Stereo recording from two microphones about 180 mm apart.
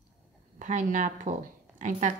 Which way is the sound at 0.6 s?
45° right (ahead or behind).